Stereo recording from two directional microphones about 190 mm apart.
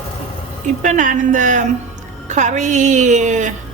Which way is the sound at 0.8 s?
40° right (ahead or behind).